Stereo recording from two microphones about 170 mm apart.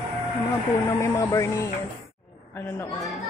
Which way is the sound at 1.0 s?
20° left (ahead or behind).